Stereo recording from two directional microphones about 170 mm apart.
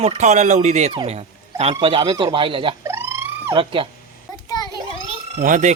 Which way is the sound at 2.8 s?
15° right (ahead or behind).